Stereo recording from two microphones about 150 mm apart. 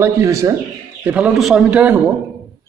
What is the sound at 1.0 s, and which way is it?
Speech, 10° right (ahead or behind).